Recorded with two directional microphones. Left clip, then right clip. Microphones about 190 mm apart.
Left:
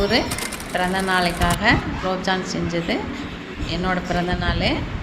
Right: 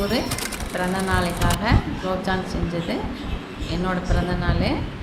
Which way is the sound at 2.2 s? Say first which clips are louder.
Left 3 dB; 10° left (ahead or behind).